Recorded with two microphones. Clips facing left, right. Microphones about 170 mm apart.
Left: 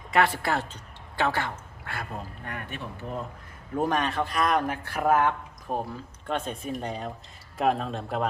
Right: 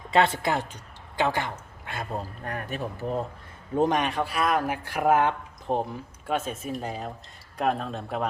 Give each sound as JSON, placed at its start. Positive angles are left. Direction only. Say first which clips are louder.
{"t": 0.1, "sound": "a woman's voice", "louder": "right 2 dB", "side_deg": -20}
{"t": 2.4, "sound": "speech", "louder": "right 5 dB", "side_deg": -40}
{"t": 3.8, "sound": "a man's voice", "louder": "right 2 dB", "side_deg": -20}
{"t": 6.2, "sound": "speech", "louder": "right 2 dB", "side_deg": -5}